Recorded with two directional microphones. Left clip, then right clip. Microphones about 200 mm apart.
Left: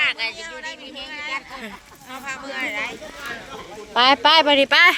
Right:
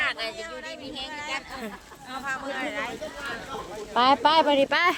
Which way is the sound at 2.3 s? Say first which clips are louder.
Left 4 dB; 65° right (ahead or behind).